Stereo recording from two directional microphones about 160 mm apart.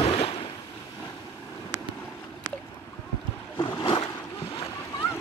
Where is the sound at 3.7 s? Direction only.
30° left (ahead or behind).